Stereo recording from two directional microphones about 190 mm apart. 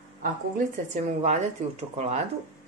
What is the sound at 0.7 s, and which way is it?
Speech, 35° right (ahead or behind).